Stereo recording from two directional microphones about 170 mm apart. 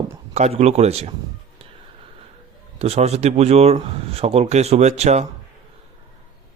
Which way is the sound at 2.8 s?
40° right (ahead or behind).